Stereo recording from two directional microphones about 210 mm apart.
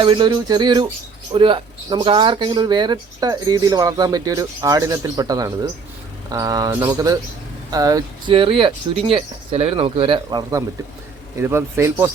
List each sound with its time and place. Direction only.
0.0 s speech: 20° right (ahead or behind)